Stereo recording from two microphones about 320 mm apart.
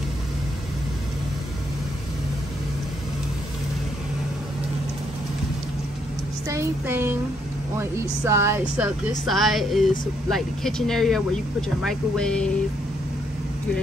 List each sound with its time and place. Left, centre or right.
6.5 s speech: centre